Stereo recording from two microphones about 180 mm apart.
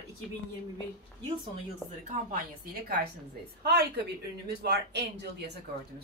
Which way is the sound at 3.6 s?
65° right (ahead or behind).